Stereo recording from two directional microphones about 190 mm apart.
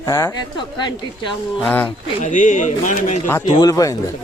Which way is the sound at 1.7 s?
10° left (ahead or behind).